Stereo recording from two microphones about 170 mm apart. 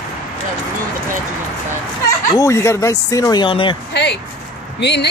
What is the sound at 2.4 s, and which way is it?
Speech, 15° left (ahead or behind).